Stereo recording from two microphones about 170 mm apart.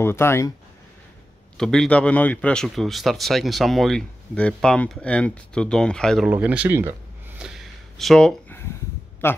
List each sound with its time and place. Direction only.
0.0 s speech: 15° left (ahead or behind)
1.6 s speech: 5° left (ahead or behind)
6.3 s a sound: 10° right (ahead or behind); by 8.6 s 10° left (ahead or behind)
9.2 s speech: 15° left (ahead or behind)